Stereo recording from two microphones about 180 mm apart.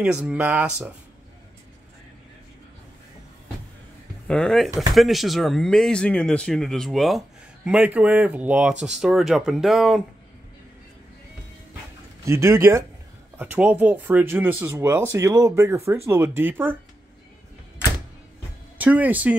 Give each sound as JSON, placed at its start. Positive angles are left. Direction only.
{"t": 0.0, "sound": "speech", "side_deg": -5}
{"t": 4.3, "sound": "speech", "side_deg": 5}
{"t": 12.3, "sound": "speech", "side_deg": -15}
{"t": 18.8, "sound": "speech", "side_deg": -10}